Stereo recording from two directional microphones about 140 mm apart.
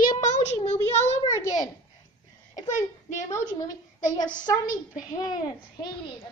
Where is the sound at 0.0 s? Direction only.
65° left (ahead or behind).